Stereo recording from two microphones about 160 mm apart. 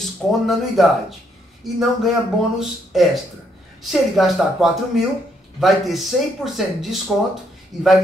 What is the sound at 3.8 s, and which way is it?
Speech, centre (ahead or behind).